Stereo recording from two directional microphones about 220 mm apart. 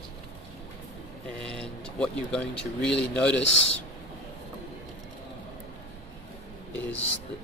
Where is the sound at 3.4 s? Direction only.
55° left (ahead or behind).